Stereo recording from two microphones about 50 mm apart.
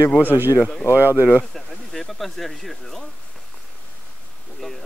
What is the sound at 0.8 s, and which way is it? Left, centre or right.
Speech, left.